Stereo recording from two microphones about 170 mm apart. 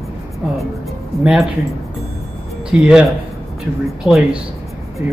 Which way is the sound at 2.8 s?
5° right (ahead or behind).